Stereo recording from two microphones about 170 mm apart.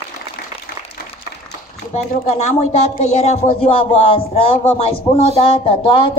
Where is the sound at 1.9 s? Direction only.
40° left (ahead or behind).